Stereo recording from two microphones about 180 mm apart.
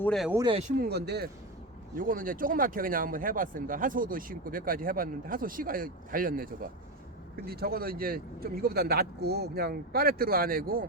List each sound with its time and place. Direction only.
0.0 s speech: 5° left (ahead or behind)
0.8 s speech: 65° right (ahead or behind)
2.0 s speech: 50° right (ahead or behind)